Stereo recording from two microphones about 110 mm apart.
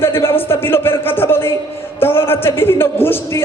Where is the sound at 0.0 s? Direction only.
20° left (ahead or behind).